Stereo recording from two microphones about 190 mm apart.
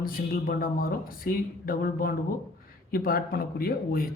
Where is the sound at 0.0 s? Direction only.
50° left (ahead or behind).